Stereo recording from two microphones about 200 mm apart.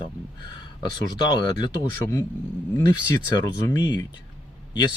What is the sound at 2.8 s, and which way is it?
Speech, 20° left (ahead or behind).